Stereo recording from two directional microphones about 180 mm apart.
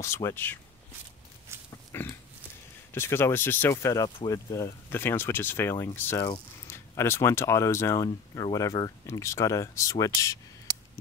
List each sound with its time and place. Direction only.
0.0 s speech: 15° left (ahead or behind)
1.5 s pig: 15° right (ahead or behind)
1.9 s pig: 15° left (ahead or behind)
2.9 s speech: 15° left (ahead or behind)